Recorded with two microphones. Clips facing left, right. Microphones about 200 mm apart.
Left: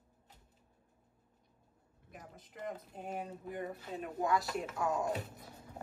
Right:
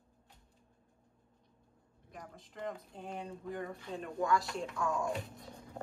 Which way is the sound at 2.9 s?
5° left (ahead or behind).